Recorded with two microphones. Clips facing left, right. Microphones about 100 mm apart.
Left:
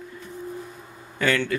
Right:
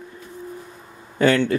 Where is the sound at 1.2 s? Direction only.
30° right (ahead or behind).